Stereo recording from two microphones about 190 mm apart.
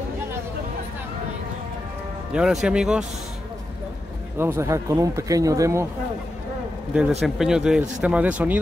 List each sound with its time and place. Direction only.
2.3 s speech: centre (ahead or behind)
4.4 s speech: 15° right (ahead or behind)
6.9 s speech: 5° right (ahead or behind)